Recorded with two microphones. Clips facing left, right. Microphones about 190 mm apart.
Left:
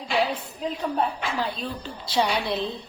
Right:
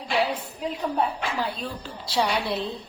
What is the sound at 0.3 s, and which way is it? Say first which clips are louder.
Speech: even; 5° right (ahead or behind).